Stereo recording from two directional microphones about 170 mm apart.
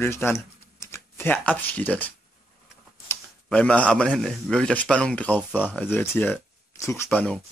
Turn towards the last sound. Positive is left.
turn(degrees=10)  # may be behind; listen again after turning